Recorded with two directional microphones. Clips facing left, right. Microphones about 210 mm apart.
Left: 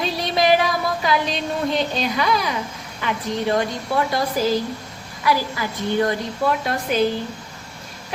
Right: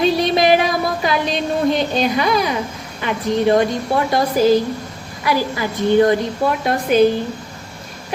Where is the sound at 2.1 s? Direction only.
15° right (ahead or behind).